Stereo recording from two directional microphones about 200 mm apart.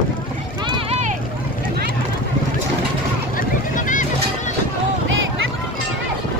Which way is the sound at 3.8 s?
40° left (ahead or behind).